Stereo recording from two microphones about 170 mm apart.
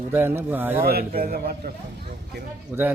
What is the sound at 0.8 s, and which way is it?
Speech, 65° right (ahead or behind).